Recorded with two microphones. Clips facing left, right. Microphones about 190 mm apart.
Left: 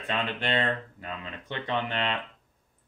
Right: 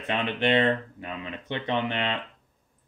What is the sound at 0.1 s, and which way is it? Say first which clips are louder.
Speech: right 5 dB; 20° right (ahead or behind).